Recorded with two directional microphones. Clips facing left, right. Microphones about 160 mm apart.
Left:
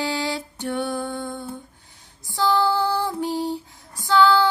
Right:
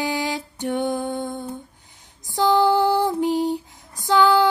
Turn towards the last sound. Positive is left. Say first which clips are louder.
# right 1 dB
turn(degrees=-20)  # may be behind; listen again after turning